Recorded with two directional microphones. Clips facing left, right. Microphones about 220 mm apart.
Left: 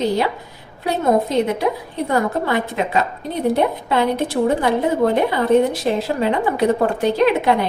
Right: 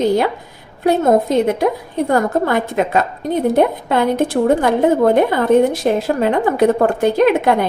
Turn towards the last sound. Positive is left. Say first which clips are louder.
# right 3 dB
turn(degrees=-50)  # may be behind; listen again after turning